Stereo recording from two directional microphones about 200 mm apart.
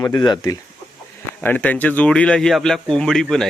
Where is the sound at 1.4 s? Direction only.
10° left (ahead or behind).